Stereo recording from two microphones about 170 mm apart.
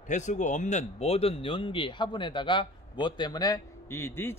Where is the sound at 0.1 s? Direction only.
45° left (ahead or behind).